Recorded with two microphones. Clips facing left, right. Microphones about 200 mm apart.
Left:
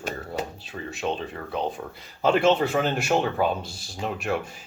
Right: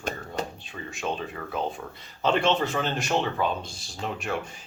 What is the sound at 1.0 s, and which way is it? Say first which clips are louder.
Speech: left 3 dB; 25° left (ahead or behind).